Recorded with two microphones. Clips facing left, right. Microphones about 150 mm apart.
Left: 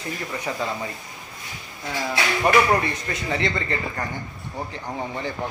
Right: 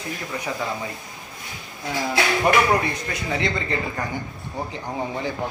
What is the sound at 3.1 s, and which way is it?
Speech, 15° right (ahead or behind).